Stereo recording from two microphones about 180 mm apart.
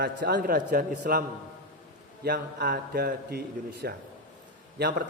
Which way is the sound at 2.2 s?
65° right (ahead or behind).